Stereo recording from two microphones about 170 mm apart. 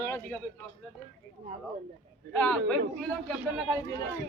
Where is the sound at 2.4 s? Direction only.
5° left (ahead or behind).